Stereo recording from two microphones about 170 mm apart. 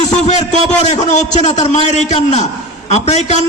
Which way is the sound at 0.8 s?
45° left (ahead or behind).